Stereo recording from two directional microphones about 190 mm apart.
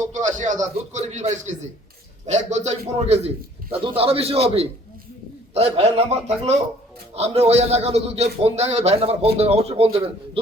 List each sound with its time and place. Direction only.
0.1 s a man's voice: 40° right (ahead or behind)